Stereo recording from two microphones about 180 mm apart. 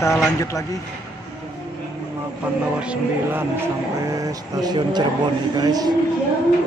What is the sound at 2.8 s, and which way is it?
Music, 5° right (ahead or behind).